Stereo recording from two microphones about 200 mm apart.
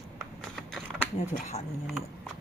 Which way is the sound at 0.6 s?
Centre (ahead or behind).